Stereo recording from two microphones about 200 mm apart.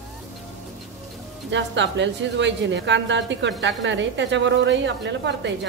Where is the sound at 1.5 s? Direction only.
65° right (ahead or behind).